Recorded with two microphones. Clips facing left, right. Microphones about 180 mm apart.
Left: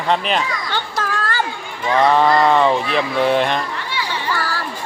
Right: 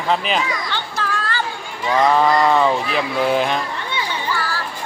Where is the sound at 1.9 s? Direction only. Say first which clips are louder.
Left 1 dB; centre (ahead or behind).